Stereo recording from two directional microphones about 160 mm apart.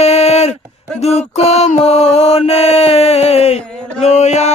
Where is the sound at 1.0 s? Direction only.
40° left (ahead or behind).